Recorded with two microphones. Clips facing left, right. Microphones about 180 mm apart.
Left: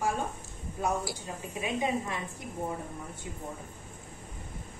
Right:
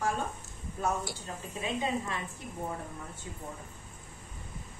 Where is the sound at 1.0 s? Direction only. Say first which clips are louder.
Left 2 dB; 10° left (ahead or behind).